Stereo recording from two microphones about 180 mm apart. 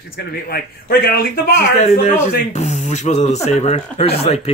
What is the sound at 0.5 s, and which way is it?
Speech, 55° left (ahead or behind).